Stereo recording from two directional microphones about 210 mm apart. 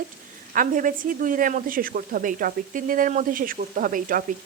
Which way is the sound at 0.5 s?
40° right (ahead or behind).